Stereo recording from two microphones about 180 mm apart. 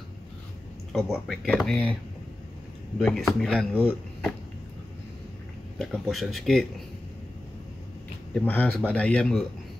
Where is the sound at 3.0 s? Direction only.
Centre (ahead or behind).